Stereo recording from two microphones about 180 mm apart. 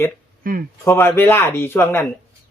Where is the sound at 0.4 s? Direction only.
50° right (ahead or behind).